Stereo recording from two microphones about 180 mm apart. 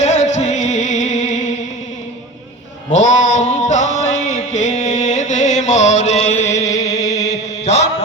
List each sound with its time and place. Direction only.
0.0 s music: 40° left (ahead or behind)
2.9 s music: 40° left (ahead or behind)
6.9 s chant: 20° left (ahead or behind)
7.3 s mantra: 40° left (ahead or behind)